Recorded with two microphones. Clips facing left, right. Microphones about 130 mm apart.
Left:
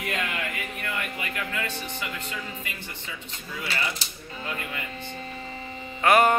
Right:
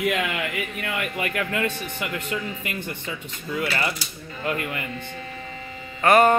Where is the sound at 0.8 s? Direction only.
75° right (ahead or behind).